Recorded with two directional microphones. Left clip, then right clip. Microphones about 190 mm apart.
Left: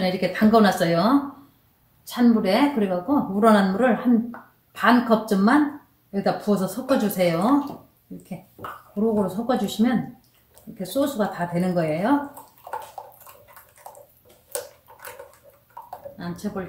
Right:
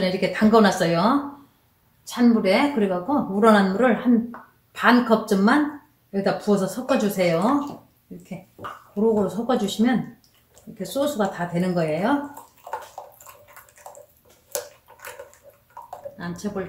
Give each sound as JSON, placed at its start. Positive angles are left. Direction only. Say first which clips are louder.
{"t": 0.0, "sound": "a woman's voice", "louder": "even", "side_deg": 0}
{"t": 9.1, "sound": "a woman's voice", "louder": "right 1 dB", "side_deg": -5}
{"t": 12.6, "sound": "bathtub", "louder": "even", "side_deg": -5}
{"t": 14.9, "sound": "bathtub", "louder": "left 1 dB", "side_deg": -5}
{"t": 15.9, "sound": "a sound", "louder": "right 1 dB", "side_deg": 0}